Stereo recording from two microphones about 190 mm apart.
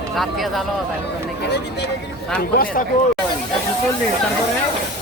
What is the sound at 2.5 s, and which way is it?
Speech, 50° left (ahead or behind).